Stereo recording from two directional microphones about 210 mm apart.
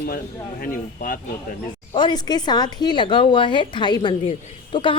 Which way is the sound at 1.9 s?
20° left (ahead or behind).